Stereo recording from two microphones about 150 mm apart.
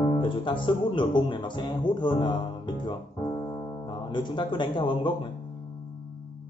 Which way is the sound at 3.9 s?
30° left (ahead or behind).